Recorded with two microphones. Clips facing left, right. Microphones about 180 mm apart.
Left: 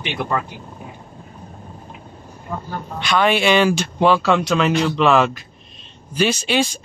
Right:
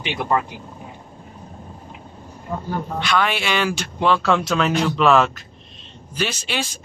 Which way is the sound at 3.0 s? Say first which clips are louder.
Left 6 dB; 20° left (ahead or behind).